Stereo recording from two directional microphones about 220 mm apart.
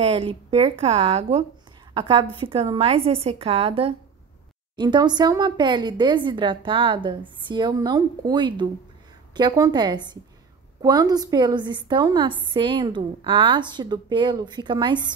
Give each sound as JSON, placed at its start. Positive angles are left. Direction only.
{"t": 0.0, "sound": "a woman's voice", "side_deg": -25}